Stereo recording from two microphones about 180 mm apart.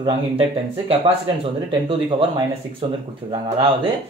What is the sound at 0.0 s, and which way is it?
Speech, 30° right (ahead or behind).